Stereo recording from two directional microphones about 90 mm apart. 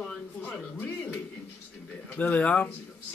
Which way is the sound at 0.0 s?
15° left (ahead or behind).